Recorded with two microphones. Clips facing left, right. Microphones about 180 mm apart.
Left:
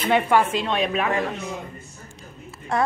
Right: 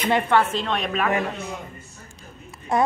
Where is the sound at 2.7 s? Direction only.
20° right (ahead or behind).